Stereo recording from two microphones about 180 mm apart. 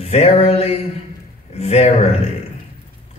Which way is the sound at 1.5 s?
35° left (ahead or behind).